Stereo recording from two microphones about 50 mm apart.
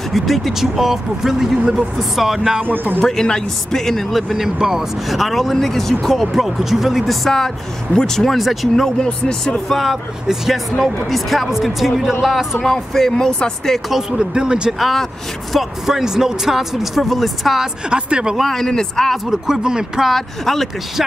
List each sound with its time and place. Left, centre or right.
0.1 s speech: centre
2.6 s speech: right
3.0 s speech: centre
8.8 s speech: centre
9.7 s speech: centre
12.6 s speech: centre
13.9 s speech: centre
14.7 s speech: centre
15.8 s speech: centre
17.8 s speech: centre
18.3 s speech: centre
19.2 s speech: centre
20.1 s speech: centre